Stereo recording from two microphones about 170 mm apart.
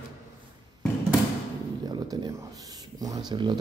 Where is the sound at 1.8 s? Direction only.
25° right (ahead or behind).